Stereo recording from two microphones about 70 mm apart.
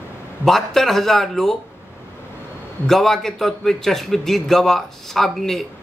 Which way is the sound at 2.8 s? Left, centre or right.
Centre.